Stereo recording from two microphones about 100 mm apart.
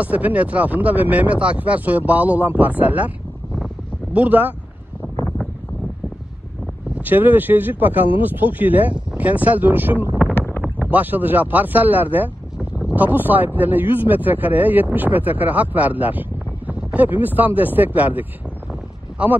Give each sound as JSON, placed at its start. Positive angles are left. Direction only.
{"t": 0.0, "sound": "speech", "side_deg": -15}
{"t": 4.1, "sound": "speech", "side_deg": -15}
{"t": 7.0, "sound": "speech", "side_deg": -20}
{"t": 10.3, "sound": "a sound", "side_deg": 20}
{"t": 10.9, "sound": "speech", "side_deg": -15}
{"t": 18.7, "sound": "a sound", "side_deg": -10}